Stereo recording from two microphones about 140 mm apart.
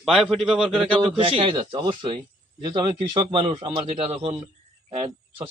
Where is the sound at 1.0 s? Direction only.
40° right (ahead or behind).